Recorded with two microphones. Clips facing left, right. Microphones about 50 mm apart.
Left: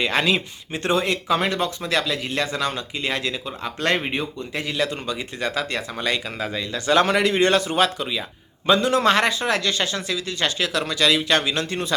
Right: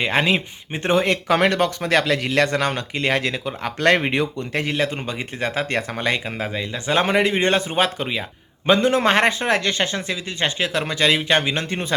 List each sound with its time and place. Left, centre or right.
0.0 s speech: right
2.1 s a man's voice: right
4.4 s speech: right
4.9 s a man's voice: right